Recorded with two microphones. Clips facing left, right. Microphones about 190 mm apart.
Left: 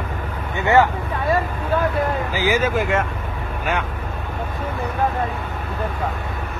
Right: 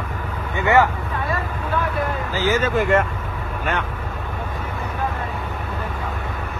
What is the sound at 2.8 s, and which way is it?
Speech, centre (ahead or behind).